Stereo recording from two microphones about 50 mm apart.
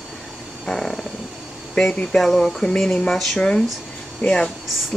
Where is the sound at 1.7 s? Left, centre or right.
Left.